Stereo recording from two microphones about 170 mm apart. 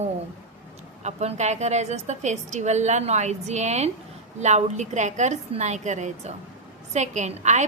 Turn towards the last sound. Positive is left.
turn(degrees=-45)  # may be behind; listen again after turning